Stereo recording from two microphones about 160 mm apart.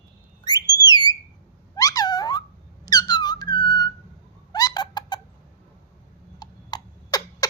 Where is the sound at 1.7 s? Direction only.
20° left (ahead or behind).